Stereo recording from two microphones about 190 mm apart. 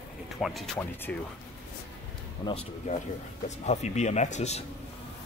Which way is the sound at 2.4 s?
30° left (ahead or behind).